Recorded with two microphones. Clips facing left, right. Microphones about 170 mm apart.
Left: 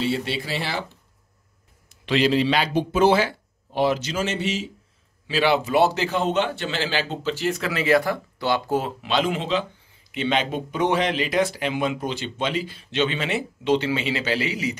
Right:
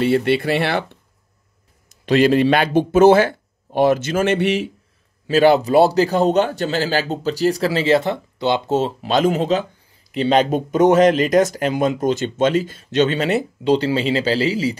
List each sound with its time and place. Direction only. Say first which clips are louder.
0.0 s speech: right 9 dB; 60° right (ahead or behind)
1.9 s speech: right 6 dB; 45° right (ahead or behind)
5.2 s speech: right 8 dB; 45° right (ahead or behind); by 8.9 s 25° right (ahead or behind)
9.0 s speech: right 6 dB; 40° right (ahead or behind)